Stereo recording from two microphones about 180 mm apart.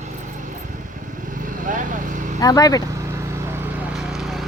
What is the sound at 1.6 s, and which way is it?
Vehicle, 45° right (ahead or behind).